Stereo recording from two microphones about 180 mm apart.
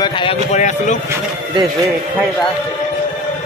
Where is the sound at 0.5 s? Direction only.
40° left (ahead or behind).